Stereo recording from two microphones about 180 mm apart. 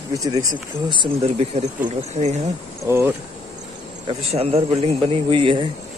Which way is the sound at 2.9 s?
15° right (ahead or behind).